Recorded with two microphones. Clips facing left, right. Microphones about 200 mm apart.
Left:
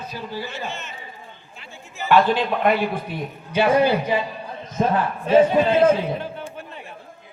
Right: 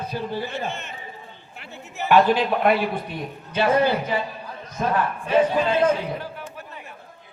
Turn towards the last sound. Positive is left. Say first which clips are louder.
# left 3 dB
turn(degrees=25)  # may be behind; listen again after turning